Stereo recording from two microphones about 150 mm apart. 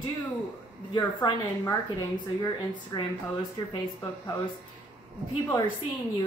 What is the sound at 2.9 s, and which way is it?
Speech, 25° left (ahead or behind).